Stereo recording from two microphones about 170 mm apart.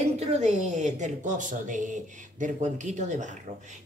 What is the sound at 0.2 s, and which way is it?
Speech, 40° right (ahead or behind).